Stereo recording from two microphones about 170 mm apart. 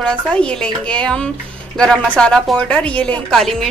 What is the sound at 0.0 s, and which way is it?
Speech, 5° left (ahead or behind).